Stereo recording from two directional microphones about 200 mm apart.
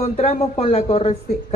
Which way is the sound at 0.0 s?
30° left (ahead or behind).